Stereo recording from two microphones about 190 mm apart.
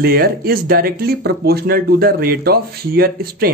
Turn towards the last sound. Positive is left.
turn(degrees=-50)  # may be behind; listen again after turning